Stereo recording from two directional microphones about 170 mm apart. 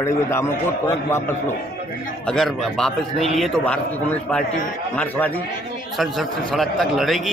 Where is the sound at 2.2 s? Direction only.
5° left (ahead or behind).